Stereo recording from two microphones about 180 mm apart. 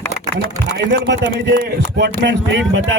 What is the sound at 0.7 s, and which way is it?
A man's voice, 75° right (ahead or behind).